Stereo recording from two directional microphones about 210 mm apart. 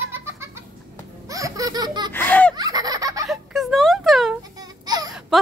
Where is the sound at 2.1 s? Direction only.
10° left (ahead or behind).